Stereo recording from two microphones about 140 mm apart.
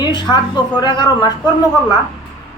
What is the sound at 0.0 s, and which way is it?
Speech, 30° left (ahead or behind).